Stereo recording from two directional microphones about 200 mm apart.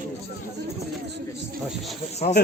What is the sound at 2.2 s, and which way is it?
Speech, 40° left (ahead or behind).